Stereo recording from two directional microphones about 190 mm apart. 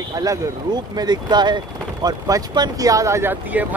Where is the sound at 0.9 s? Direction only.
20° right (ahead or behind).